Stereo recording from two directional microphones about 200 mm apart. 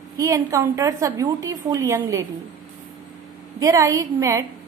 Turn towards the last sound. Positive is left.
turn(degrees=-15)  # may be behind; listen again after turning